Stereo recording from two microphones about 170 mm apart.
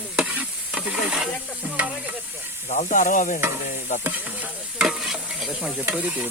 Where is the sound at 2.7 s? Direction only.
45° left (ahead or behind).